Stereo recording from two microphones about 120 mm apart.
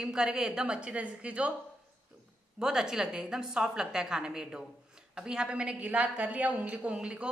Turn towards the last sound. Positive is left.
turn(degrees=-10)  # may be behind; listen again after turning